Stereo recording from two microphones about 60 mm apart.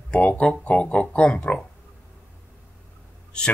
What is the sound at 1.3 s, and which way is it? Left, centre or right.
Speech, centre.